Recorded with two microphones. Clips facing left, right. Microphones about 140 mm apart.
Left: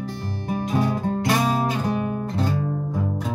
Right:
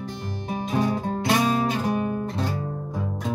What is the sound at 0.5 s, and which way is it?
Music, 15° right (ahead or behind).